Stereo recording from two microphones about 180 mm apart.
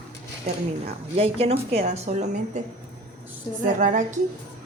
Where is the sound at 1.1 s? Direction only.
35° right (ahead or behind).